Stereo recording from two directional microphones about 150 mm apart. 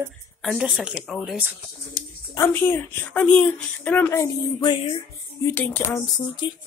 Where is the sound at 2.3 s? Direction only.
15° left (ahead or behind).